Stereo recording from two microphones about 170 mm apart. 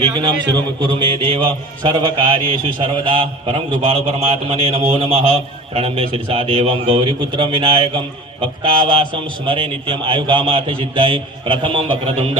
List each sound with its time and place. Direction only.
0.0 s a man's voice: 25° right (ahead or behind)
0.8 s mantra: 30° right (ahead or behind)